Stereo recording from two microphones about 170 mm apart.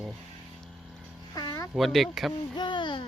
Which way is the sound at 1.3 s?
20° left (ahead or behind).